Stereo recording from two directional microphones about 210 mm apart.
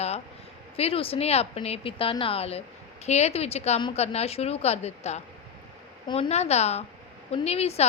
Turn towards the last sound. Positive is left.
turn(degrees=30)  # may be behind; listen again after turning